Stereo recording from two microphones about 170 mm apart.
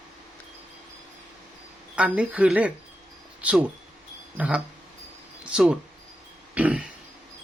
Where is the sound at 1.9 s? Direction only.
10° right (ahead or behind).